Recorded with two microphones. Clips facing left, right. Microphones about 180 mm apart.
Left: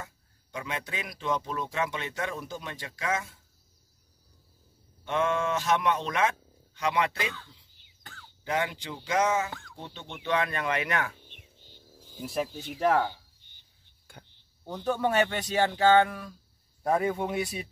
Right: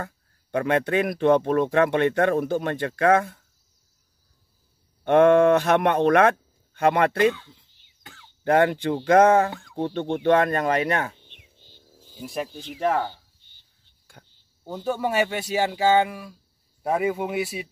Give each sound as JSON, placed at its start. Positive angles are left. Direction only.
{"t": 0.0, "sound": "speech", "side_deg": -60}
{"t": 5.0, "sound": "speech", "side_deg": -60}
{"t": 8.5, "sound": "speech", "side_deg": -55}
{"t": 11.2, "sound": "a sound", "side_deg": 15}
{"t": 12.0, "sound": "speech", "side_deg": -10}
{"t": 12.5, "sound": "speech", "side_deg": 0}
{"t": 13.1, "sound": "a sound", "side_deg": 15}
{"t": 14.1, "sound": "cricket", "side_deg": 0}
{"t": 14.7, "sound": "speech", "side_deg": -10}